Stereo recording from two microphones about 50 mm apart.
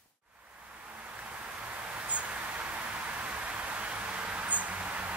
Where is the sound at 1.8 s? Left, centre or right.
Right.